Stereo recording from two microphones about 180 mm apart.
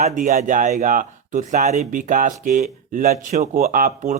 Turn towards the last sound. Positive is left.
turn(degrees=-45)  # may be behind; listen again after turning